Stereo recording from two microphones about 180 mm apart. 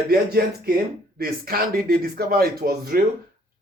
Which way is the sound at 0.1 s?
60° right (ahead or behind).